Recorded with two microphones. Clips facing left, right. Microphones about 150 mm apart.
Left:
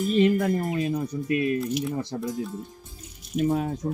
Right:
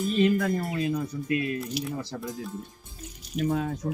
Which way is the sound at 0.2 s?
20° left (ahead or behind).